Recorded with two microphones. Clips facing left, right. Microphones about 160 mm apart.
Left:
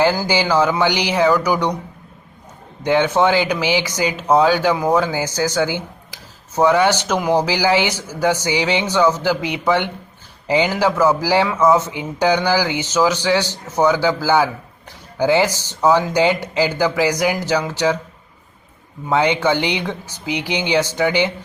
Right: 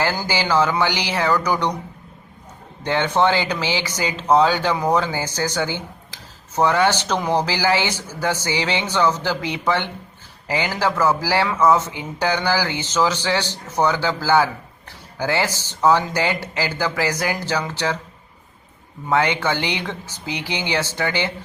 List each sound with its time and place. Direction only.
0.5 s speech: 15° left (ahead or behind)
2.8 s speech: 15° left (ahead or behind)
4.7 s speech: centre (ahead or behind)
5.0 s speech: 10° left (ahead or behind)
7.2 s speech: centre (ahead or behind)
7.4 s speech: 15° left (ahead or behind)
19.0 s speech: 20° left (ahead or behind)